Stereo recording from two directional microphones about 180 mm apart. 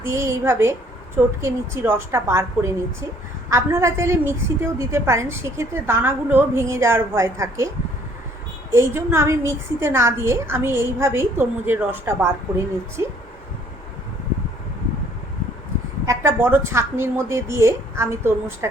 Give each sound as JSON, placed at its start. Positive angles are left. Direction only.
{"t": 0.0, "sound": "a woman's voice", "side_deg": -15}
{"t": 8.7, "sound": "a woman's voice", "side_deg": -15}
{"t": 16.0, "sound": "a woman's voice", "side_deg": -15}